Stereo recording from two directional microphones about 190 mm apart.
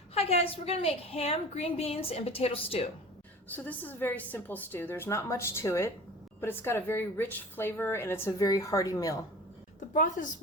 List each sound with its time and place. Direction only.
0.1 s a woman's voice: 30° left (ahead or behind)
3.5 s a woman's voice: 10° left (ahead or behind)
9.9 s a woman's voice: 45° left (ahead or behind)